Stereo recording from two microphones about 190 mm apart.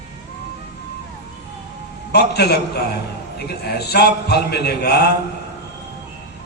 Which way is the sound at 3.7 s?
60° left (ahead or behind).